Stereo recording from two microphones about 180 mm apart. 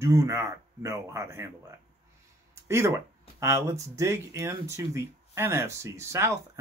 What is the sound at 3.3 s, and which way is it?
Speech, 15° right (ahead or behind).